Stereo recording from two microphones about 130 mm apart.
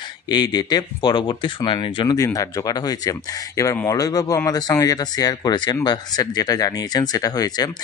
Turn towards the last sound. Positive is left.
turn(degrees=30)  # may be behind; listen again after turning